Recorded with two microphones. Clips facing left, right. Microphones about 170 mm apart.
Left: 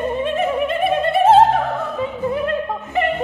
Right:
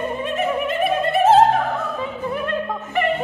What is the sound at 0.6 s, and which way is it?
Music, 30° left (ahead or behind).